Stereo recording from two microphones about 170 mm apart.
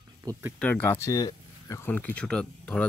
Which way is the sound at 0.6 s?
10° left (ahead or behind).